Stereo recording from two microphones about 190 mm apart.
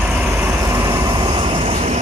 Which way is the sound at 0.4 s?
15° right (ahead or behind).